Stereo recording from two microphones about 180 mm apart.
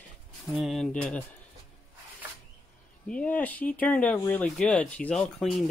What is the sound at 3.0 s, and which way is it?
Speech, 5° left (ahead or behind).